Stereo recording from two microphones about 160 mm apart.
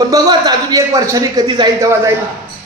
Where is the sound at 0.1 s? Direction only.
25° right (ahead or behind).